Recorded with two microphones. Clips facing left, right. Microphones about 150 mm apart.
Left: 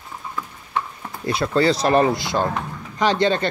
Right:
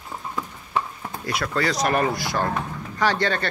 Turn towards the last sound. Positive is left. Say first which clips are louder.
# left 4 dB
turn(degrees=20)  # may be behind; listen again after turning